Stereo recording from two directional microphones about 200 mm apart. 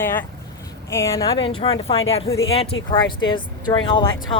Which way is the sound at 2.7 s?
80° left.